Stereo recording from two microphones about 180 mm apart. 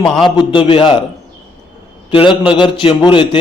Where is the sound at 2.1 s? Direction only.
30° left (ahead or behind).